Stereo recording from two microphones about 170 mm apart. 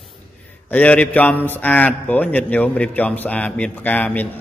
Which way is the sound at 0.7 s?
10° left (ahead or behind).